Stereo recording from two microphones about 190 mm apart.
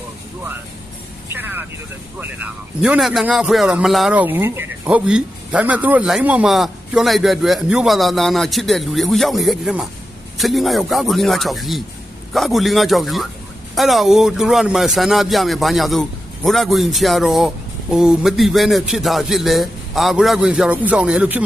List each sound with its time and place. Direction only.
1.3 s vehicle: 10° right (ahead or behind)
2.1 s a man's voice: 5° right (ahead or behind)